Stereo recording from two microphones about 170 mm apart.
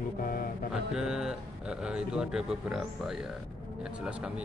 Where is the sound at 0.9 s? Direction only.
5° right (ahead or behind).